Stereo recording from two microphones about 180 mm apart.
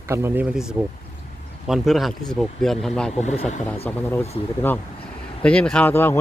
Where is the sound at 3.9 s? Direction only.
5° left (ahead or behind).